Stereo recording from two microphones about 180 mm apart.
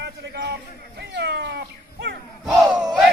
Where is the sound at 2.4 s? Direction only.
Centre (ahead or behind).